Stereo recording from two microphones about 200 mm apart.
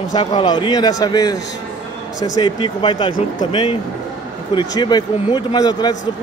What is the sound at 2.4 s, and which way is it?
A man's voice, 25° left (ahead or behind).